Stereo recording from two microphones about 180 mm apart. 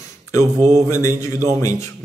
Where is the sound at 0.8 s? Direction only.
15° left (ahead or behind).